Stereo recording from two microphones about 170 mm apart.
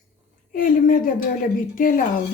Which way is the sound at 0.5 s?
55° left (ahead or behind).